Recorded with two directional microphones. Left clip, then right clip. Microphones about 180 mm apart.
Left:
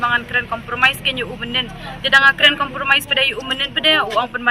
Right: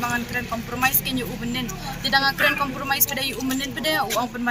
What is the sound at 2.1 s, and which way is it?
A man's voice, 15° left (ahead or behind).